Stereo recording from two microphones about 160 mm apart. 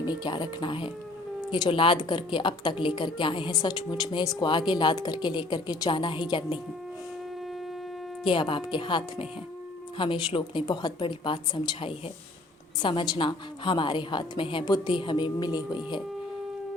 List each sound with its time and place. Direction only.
0.2 s speech: 25° left (ahead or behind)
8.2 s a woman's voice: 30° left (ahead or behind)